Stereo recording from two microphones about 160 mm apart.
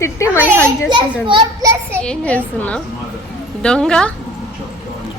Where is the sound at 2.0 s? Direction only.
5° left (ahead or behind).